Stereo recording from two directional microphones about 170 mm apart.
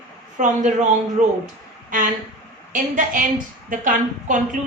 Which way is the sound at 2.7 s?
50° right (ahead or behind).